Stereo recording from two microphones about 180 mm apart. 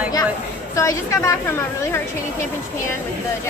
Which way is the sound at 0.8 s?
15° left (ahead or behind).